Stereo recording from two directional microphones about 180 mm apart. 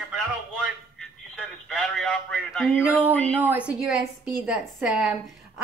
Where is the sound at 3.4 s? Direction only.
10° right (ahead or behind).